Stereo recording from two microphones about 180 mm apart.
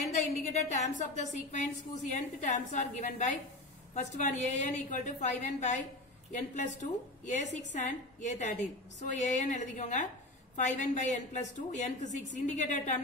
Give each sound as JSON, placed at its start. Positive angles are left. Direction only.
{"t": 0.1, "sound": "a woman's voice", "side_deg": 40}